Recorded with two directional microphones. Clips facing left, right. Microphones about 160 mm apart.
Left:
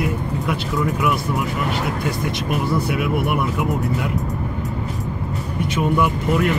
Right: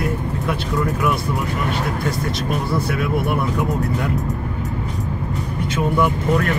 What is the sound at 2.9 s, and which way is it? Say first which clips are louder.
Speech: even; 15° left (ahead or behind).